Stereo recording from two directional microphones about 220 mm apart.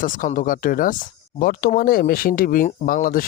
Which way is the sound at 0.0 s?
40° left (ahead or behind).